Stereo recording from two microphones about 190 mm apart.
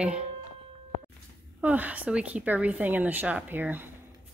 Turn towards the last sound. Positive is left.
turn(degrees=-10)  # may be behind; listen again after turning